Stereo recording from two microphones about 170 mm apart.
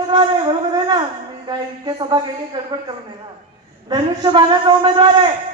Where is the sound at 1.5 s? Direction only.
25° right (ahead or behind).